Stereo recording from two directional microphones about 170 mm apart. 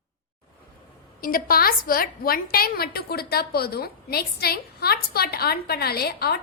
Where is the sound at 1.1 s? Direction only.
60° left (ahead or behind).